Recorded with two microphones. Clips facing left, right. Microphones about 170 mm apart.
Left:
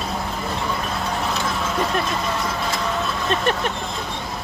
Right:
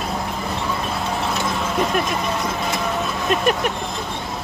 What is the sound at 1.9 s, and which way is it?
Vehicle, 15° right (ahead or behind).